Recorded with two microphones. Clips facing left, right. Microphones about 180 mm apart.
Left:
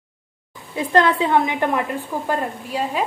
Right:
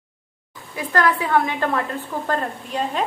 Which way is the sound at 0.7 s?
25° left (ahead or behind).